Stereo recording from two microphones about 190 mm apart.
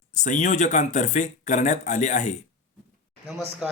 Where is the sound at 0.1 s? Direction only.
40° left (ahead or behind).